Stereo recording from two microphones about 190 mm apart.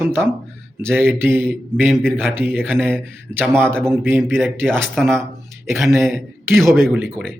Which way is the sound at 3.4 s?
10° right (ahead or behind).